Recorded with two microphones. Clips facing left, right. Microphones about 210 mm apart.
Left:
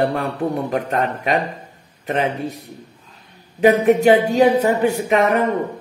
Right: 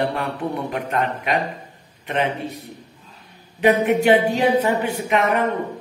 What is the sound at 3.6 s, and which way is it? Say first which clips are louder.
A woman's voice: left 3 dB; 40° left (ahead or behind).